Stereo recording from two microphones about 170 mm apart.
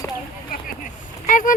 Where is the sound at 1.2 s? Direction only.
50° left (ahead or behind).